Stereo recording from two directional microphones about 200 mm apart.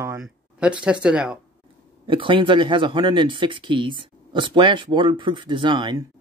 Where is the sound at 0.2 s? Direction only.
5° right (ahead or behind).